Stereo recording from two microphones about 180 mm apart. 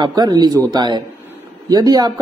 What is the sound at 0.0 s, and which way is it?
A man's voice, 20° right (ahead or behind).